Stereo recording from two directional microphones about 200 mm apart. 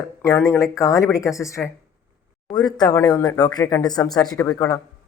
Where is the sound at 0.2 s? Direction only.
15° left (ahead or behind).